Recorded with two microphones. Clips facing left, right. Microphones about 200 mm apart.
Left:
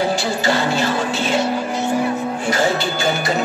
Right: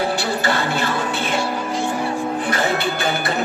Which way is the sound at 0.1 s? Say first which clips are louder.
Left 2 dB; 60° right (ahead or behind).